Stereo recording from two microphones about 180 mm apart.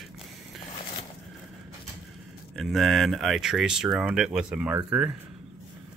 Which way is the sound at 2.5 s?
Centre (ahead or behind).